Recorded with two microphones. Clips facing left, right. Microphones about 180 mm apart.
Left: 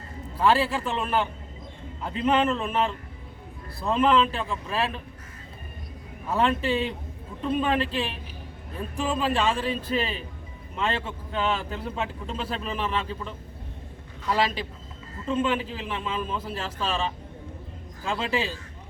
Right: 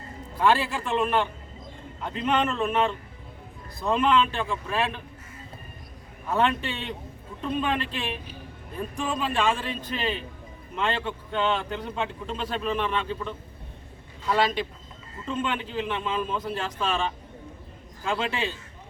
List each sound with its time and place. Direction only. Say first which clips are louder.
0.3 s speech: left 1 dB; centre (ahead or behind)
2.3 s speech: even; 5° left (ahead or behind)
6.2 s speech: left 1 dB; centre (ahead or behind)
7.8 s speech: left 5 dB; 35° left (ahead or behind)
9.0 s speech: left 2 dB; centre (ahead or behind)